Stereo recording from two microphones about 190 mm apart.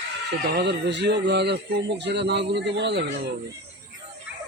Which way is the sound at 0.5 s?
65° right (ahead or behind).